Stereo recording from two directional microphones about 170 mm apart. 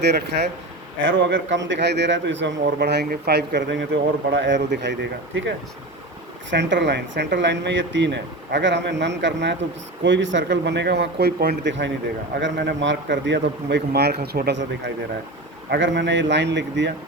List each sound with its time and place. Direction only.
0.0 s speech: 80° right
1.0 s a man's voice: 90° right; by 14.6 s 70° right (ahead or behind)
15.7 s a man's voice: 90° right